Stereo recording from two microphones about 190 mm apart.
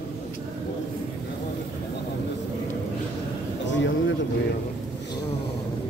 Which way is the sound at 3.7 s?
75° left (ahead or behind).